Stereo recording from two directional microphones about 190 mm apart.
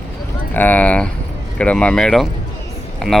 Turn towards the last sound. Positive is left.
turn(degrees=0)  # may be behind; listen again after turning